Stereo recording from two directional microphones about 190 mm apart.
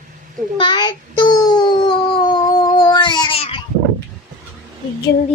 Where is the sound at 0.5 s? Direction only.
25° left (ahead or behind).